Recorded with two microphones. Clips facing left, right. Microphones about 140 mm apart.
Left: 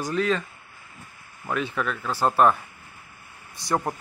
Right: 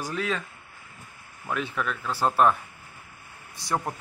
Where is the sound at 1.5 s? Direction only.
Centre (ahead or behind).